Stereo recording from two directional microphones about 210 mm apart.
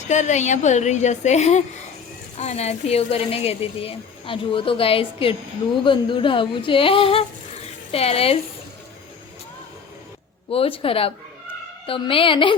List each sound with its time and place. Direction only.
0.1 s speech: 35° left (ahead or behind)
10.5 s speech: 25° left (ahead or behind)